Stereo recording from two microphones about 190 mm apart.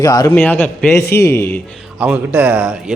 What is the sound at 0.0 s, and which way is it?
Speech, 20° left (ahead or behind).